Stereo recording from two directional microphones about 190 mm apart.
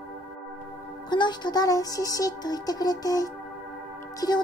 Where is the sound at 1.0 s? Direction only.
25° left (ahead or behind).